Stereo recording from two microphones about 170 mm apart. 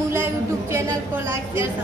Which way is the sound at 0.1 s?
15° right (ahead or behind).